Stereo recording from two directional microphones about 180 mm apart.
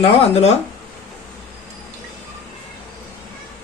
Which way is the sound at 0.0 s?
35° left (ahead or behind).